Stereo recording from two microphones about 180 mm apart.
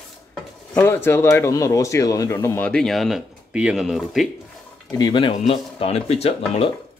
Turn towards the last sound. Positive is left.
turn(degrees=35)  # may be behind; listen again after turning